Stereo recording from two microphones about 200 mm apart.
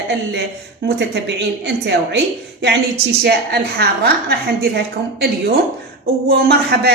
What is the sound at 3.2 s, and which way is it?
A woman's voice, 55° right (ahead or behind).